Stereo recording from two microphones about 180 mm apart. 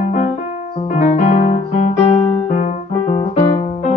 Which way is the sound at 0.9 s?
40° left (ahead or behind).